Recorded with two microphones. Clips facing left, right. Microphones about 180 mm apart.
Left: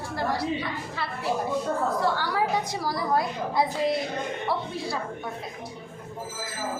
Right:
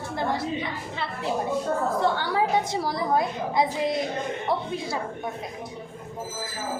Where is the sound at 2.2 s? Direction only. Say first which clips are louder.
Right 2 dB; 20° right (ahead or behind).